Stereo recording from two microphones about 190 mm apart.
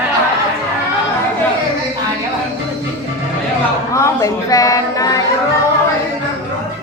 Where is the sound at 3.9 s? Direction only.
15° left (ahead or behind).